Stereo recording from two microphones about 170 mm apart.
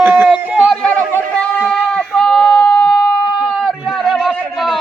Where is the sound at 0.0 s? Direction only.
10° right (ahead or behind).